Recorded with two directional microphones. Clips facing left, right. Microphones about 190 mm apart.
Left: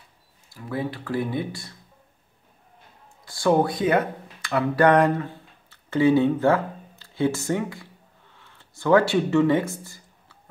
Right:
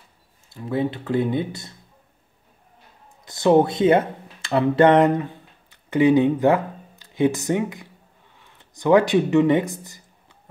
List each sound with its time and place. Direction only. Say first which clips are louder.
0.5 s speech: right 5 dB; 25° right (ahead or behind)
3.3 s speech: right 4 dB; 20° right (ahead or behind)